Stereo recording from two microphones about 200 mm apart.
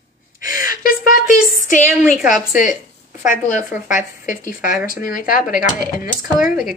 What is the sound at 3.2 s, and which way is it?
Speech, 40° left (ahead or behind).